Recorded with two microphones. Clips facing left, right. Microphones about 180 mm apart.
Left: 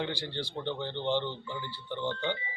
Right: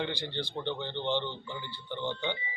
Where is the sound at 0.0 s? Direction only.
10° left (ahead or behind).